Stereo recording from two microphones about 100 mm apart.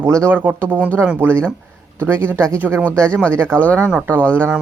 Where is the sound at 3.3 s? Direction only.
25° right (ahead or behind).